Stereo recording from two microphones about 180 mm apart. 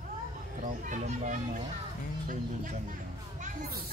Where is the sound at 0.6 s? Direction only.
40° right (ahead or behind).